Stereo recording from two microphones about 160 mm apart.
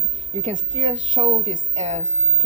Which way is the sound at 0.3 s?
40° right (ahead or behind).